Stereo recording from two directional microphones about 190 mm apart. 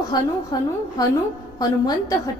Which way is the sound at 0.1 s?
20° left (ahead or behind).